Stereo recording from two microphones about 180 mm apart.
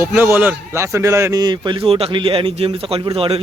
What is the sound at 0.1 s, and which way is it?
A man's voice, 10° right (ahead or behind).